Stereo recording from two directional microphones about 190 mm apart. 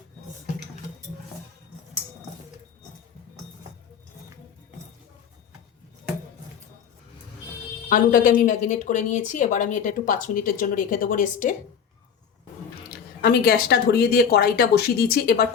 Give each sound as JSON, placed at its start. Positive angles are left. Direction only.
{"t": 7.9, "sound": "speech", "side_deg": 45}
{"t": 13.2, "sound": "speech", "side_deg": 50}